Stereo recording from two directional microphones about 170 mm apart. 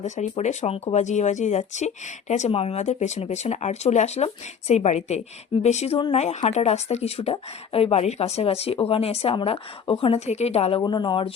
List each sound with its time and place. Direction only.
0.0 s speech: 45° left (ahead or behind); by 11.3 s 30° left (ahead or behind)